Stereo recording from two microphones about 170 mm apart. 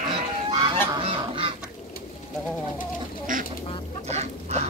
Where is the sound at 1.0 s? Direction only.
35° right (ahead or behind).